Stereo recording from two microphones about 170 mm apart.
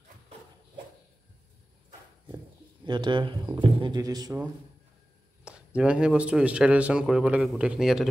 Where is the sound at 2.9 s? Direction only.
25° right (ahead or behind).